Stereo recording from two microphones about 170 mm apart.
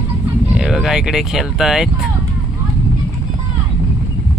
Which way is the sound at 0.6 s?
Centre (ahead or behind).